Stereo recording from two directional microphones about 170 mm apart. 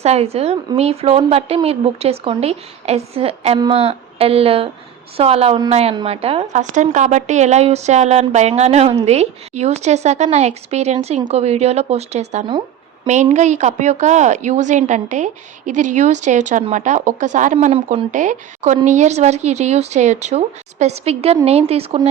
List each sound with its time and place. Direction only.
0.0 s a woman's voice: 40° right (ahead or behind)